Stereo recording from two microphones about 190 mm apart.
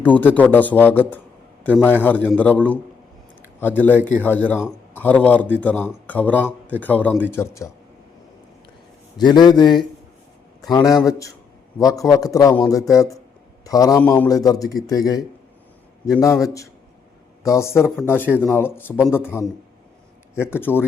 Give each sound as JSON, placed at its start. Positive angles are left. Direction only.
{"t": 0.0, "sound": "a man's voice", "side_deg": 10}
{"t": 9.1, "sound": "a man's voice", "side_deg": 20}